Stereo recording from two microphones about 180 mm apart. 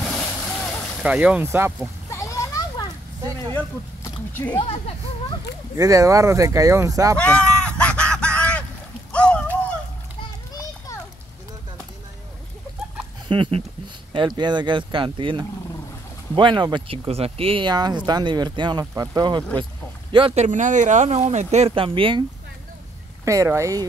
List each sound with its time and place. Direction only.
0.0 s boat: 5° left (ahead or behind)
1.0 s speech: 5° right (ahead or behind)
2.0 s children playing: 15° left (ahead or behind)
3.5 s speech: 10° left (ahead or behind)
4.6 s speech: 30° left (ahead or behind)
5.8 s speech: 20° right (ahead or behind)
7.2 s a sound: 5° left (ahead or behind)
10.5 s children playing: 20° left (ahead or behind)
13.3 s speech: 30° right (ahead or behind)
20.4 s speech: 45° right (ahead or behind)
23.2 s speech: 15° right (ahead or behind)